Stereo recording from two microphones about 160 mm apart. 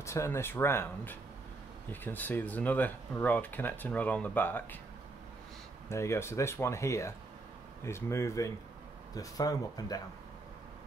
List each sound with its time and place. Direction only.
0.0 s speech: 20° left (ahead or behind)
5.9 s speech: 15° left (ahead or behind)